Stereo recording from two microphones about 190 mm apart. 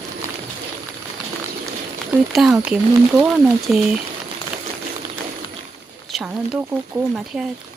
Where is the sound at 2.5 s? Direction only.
10° right (ahead or behind).